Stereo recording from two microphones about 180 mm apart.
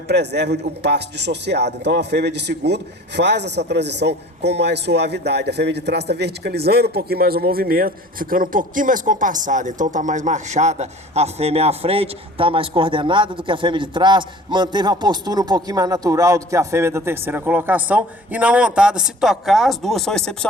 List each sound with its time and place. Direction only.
0.1 s a man's voice: 70° right (ahead or behind); by 20.5 s 5° left (ahead or behind)